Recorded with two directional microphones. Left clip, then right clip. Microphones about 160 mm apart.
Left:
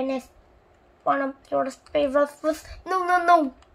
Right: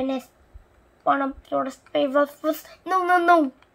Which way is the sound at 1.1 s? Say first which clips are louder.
Right 2 dB; 15° left (ahead or behind).